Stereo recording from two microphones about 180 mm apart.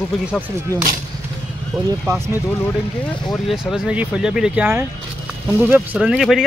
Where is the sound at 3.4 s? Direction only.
5° right (ahead or behind).